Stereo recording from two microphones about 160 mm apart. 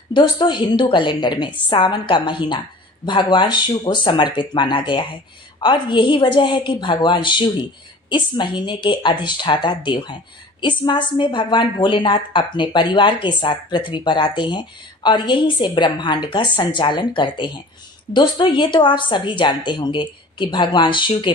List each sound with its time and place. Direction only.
0.1 s a woman's voice: 30° left (ahead or behind)